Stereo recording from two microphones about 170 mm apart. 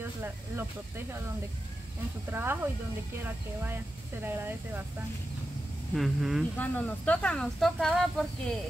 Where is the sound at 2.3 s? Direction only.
10° right (ahead or behind).